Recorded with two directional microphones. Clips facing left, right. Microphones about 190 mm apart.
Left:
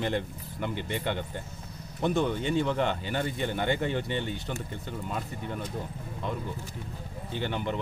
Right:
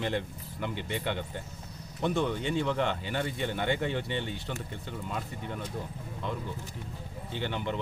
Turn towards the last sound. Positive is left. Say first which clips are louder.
# left 2 dB
turn(degrees=45)  # may be behind; listen again after turning